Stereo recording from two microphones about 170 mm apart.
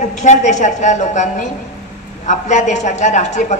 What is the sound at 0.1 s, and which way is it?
A man's voice, 45° left (ahead or behind).